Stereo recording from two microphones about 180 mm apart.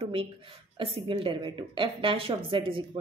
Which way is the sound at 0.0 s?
30° right (ahead or behind).